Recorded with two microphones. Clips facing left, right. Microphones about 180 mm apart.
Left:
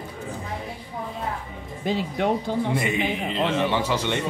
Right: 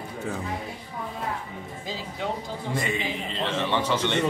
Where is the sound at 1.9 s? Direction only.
65° left (ahead or behind).